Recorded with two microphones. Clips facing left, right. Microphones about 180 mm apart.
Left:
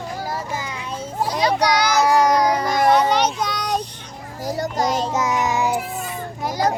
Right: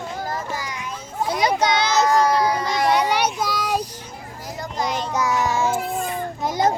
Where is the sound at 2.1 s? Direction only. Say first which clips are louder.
Left 3 dB; 15° left (ahead or behind).